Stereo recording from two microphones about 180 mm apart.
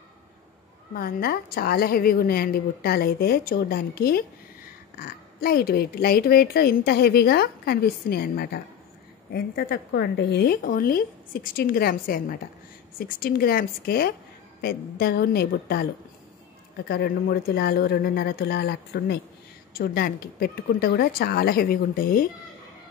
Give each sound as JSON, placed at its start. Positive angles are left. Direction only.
{"t": 0.9, "sound": "speech", "side_deg": 55}